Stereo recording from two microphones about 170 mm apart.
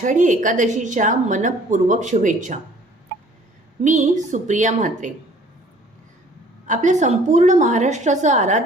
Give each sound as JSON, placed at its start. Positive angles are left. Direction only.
{"t": 0.0, "sound": "a woman's voice", "side_deg": -50}
{"t": 3.8, "sound": "a woman's voice", "side_deg": -45}
{"t": 6.7, "sound": "a woman's voice", "side_deg": -45}